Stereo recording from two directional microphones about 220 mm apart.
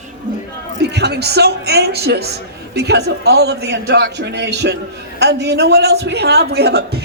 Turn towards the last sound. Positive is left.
turn(degrees=-45)  # may be behind; listen again after turning